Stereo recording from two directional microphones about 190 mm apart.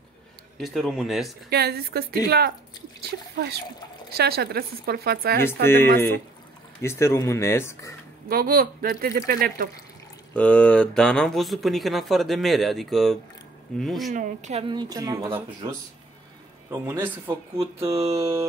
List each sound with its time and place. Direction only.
0.6 s speech: centre (ahead or behind)
1.5 s speech: 55° right (ahead or behind)
5.7 s speech: 10° left (ahead or behind)
8.3 s speech: 50° right (ahead or behind)
10.3 s speech: 5° left (ahead or behind)
14.1 s speech: 40° right (ahead or behind); by 15.7 s 15° right (ahead or behind)
16.7 s speech: 10° right (ahead or behind)